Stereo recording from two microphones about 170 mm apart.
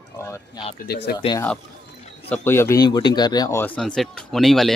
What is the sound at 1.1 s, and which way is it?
Speech, 20° left (ahead or behind).